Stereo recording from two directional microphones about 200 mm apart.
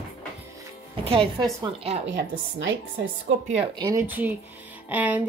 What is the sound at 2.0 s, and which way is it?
Speech, 65° right (ahead or behind).